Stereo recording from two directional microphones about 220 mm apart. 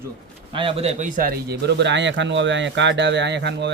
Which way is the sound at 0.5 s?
25° right (ahead or behind).